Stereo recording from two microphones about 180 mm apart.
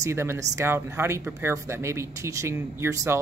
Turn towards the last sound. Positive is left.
turn(degrees=-15)  # may be behind; listen again after turning